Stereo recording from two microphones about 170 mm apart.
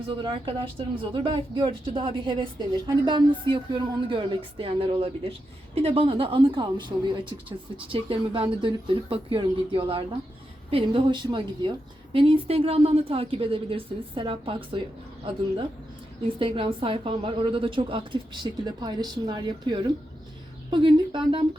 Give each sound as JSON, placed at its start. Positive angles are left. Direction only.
{"t": 0.1, "sound": "a woman's voice", "side_deg": -30}
{"t": 16.4, "sound": "speech", "side_deg": -30}